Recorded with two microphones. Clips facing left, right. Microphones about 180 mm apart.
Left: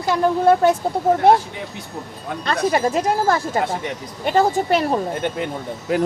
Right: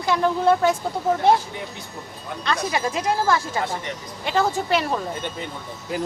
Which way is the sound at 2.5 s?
45° left (ahead or behind).